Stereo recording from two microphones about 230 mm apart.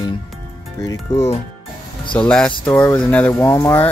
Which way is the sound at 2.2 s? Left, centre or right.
Centre.